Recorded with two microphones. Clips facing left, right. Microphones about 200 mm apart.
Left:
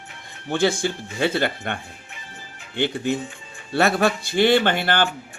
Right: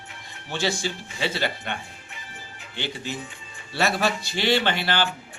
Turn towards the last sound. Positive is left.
turn(degrees=50)  # may be behind; listen again after turning